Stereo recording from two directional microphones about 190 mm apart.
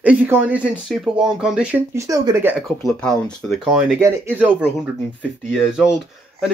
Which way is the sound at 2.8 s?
Centre (ahead or behind).